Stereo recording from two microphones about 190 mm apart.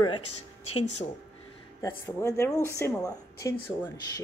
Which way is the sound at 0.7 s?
35° left (ahead or behind).